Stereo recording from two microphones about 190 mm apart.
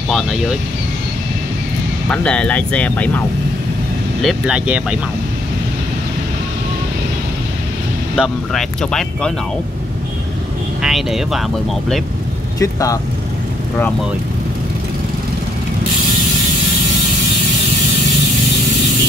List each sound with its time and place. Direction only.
2.0 s speech: 5° left (ahead or behind)
8.2 s speech: centre (ahead or behind)
10.8 s speech: centre (ahead or behind)
12.5 s speech: 15° left (ahead or behind)